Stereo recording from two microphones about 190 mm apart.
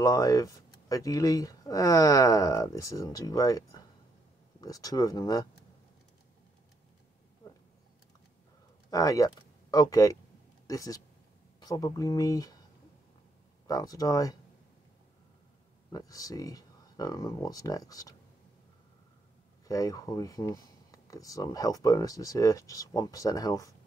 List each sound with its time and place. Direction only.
0.0 s speech: 20° left (ahead or behind)
7.4 s a sound: 20° left (ahead or behind)
8.9 s speech: 20° left (ahead or behind)
13.7 s speech: 20° left (ahead or behind)
15.9 s speech: 20° left (ahead or behind)
19.7 s speech: 20° left (ahead or behind)